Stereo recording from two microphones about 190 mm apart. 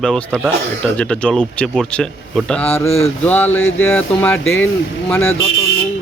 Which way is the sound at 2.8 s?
30° left (ahead or behind).